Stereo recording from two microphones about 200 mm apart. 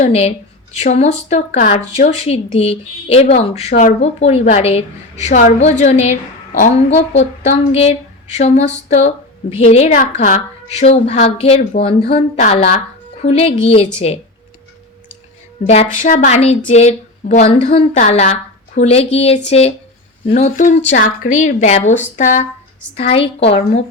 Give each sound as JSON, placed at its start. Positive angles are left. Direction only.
{"t": 0.0, "sound": "a woman's voice", "side_deg": 30}
{"t": 15.6, "sound": "a woman's voice", "side_deg": 35}
{"t": 23.0, "sound": "speech", "side_deg": 30}